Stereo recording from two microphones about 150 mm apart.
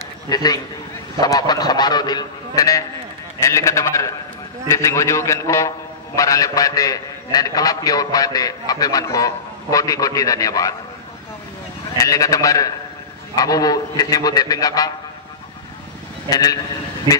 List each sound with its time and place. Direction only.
0.3 s a man's voice: 25° left (ahead or behind)
12.0 s a man's voice: 25° left (ahead or behind)
16.3 s a man's voice: 25° left (ahead or behind)